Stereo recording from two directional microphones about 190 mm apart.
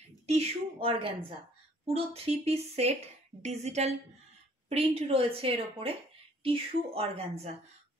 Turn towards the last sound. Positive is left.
turn(degrees=-30)  # may be behind; listen again after turning